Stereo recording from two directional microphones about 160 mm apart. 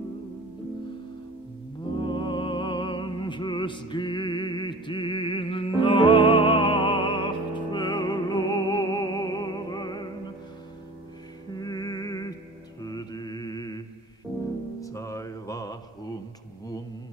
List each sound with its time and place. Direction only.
2.0 s music: 30° left (ahead or behind)
11.5 s music: 25° left (ahead or behind)
12.8 s mantra: 25° left (ahead or behind)
14.8 s music: 20° left (ahead or behind)